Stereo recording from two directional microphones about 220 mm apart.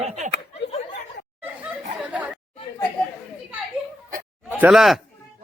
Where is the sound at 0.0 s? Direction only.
30° right (ahead or behind).